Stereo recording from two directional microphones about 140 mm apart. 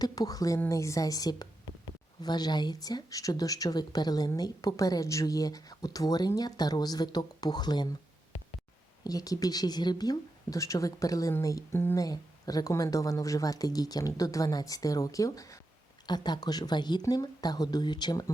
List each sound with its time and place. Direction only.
0.0 s a woman's voice: 25° left (ahead or behind)
9.0 s a woman's voice: 25° left (ahead or behind)
12.0 s a woman's voice: 25° left (ahead or behind)